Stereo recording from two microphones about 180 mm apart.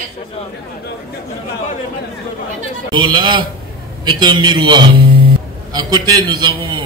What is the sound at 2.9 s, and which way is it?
A man's voice, 25° right (ahead or behind).